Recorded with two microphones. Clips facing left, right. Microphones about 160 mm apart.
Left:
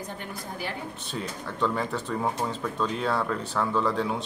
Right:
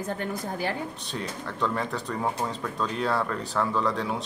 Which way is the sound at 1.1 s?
Centre (ahead or behind).